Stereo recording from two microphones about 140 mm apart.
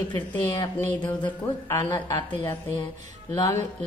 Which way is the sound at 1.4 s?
20° left (ahead or behind).